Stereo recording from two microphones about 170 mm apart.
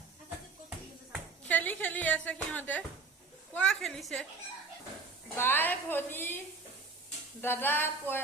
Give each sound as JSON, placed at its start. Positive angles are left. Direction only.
{"t": 1.5, "sound": "a woman's voice", "side_deg": 10}
{"t": 5.4, "sound": "a woman's voice", "side_deg": 10}
{"t": 7.4, "sound": "a woman's voice", "side_deg": 10}